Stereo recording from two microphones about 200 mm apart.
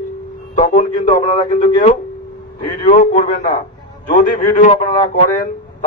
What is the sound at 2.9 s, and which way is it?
A man's voice, 40° left (ahead or behind).